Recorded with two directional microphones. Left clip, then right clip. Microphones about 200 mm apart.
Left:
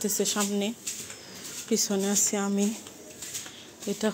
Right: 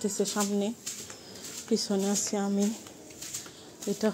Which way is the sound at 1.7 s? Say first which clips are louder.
Left 2 dB; 5° right (ahead or behind).